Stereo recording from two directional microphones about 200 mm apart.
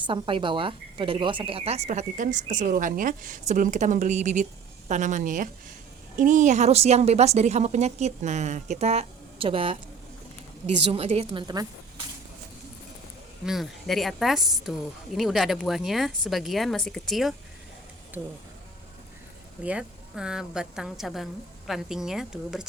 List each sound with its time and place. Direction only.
0.0 s speech: 25° right (ahead or behind)
10.9 s a woman's voice: 30° right (ahead or behind)
13.4 s speech: centre (ahead or behind)
19.6 s speech: 5° right (ahead or behind)